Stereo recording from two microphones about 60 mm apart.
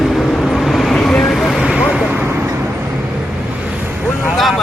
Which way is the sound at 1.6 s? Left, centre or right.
Centre.